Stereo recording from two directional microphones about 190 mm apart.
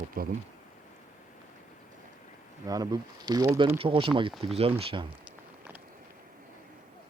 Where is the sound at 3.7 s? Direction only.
30° right (ahead or behind).